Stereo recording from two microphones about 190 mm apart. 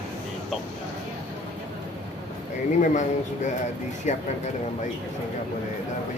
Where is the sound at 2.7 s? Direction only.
40° left (ahead or behind).